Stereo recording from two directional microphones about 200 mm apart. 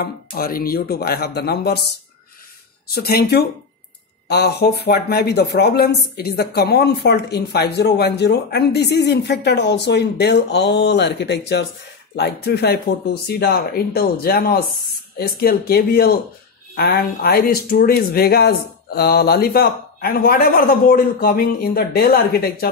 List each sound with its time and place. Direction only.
0.0 s speech: 45° left (ahead or behind)
2.9 s speech: 50° left (ahead or behind)